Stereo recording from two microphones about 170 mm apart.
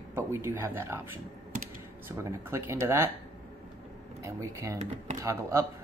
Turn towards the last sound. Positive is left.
turn(degrees=-15)  # may be behind; listen again after turning